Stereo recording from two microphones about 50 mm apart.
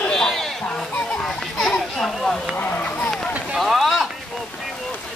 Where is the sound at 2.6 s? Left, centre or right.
Left.